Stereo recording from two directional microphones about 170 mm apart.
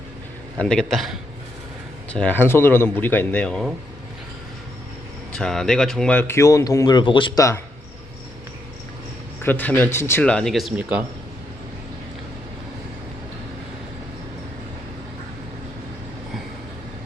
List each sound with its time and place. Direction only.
0.6 s a man's voice: 5° left (ahead or behind)
5.3 s speech: 5° left (ahead or behind); by 7.6 s 20° left (ahead or behind)
9.4 s speech: 10° left (ahead or behind); by 11.0 s 10° right (ahead or behind)